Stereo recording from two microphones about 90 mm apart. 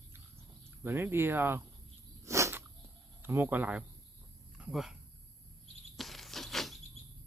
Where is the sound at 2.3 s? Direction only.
35° right (ahead or behind).